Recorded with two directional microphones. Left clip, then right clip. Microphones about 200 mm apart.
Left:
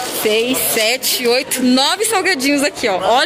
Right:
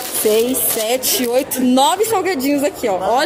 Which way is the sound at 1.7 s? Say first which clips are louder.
Right 1 dB; 15° right (ahead or behind).